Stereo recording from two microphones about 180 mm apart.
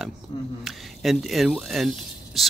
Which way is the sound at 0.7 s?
Centre (ahead or behind).